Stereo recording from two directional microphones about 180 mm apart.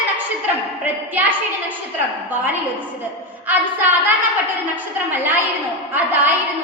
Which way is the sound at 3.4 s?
10° right (ahead or behind).